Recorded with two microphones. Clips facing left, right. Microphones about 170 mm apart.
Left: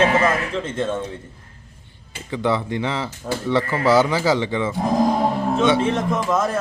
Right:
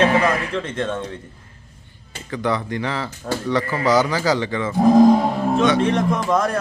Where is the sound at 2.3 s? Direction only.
20° left (ahead or behind).